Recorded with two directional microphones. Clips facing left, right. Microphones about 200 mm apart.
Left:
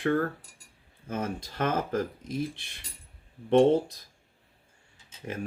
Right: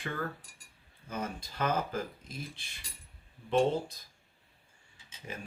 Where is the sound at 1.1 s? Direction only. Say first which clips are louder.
Left 5 dB; 90° left.